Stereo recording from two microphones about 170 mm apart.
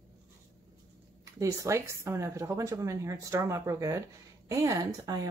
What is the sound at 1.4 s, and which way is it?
A woman's voice, 15° right (ahead or behind).